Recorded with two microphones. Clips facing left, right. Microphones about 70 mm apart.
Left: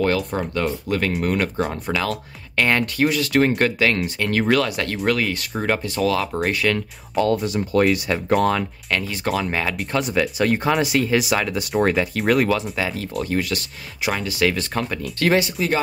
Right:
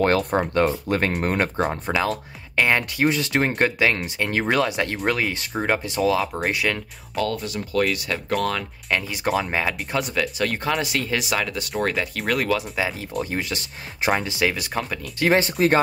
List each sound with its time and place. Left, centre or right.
0.4 s speech: right
2.0 s speech: centre
7.2 s speech: left
8.9 s speech: centre
9.8 s speech: centre
10.1 s speech: centre
12.7 s speech: centre
15.3 s speech: right